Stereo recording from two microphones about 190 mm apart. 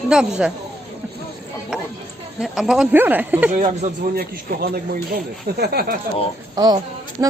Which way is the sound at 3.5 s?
40° right (ahead or behind).